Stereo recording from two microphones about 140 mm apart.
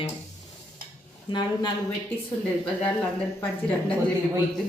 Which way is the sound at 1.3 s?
35° left (ahead or behind).